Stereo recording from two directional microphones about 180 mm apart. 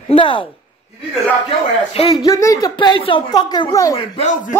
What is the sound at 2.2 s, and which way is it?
A woman's voice, 20° left (ahead or behind).